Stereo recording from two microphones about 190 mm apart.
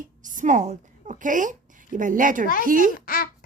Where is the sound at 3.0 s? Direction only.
50° left (ahead or behind).